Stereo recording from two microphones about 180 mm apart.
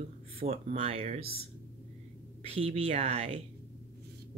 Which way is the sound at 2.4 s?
35° right (ahead or behind).